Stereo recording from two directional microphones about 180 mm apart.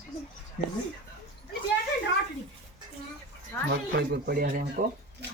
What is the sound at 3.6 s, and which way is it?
Speech, 60° right (ahead or behind).